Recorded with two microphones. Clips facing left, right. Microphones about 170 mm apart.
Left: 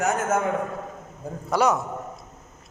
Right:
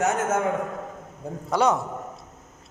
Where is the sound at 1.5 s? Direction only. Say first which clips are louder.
Even; 25° right (ahead or behind).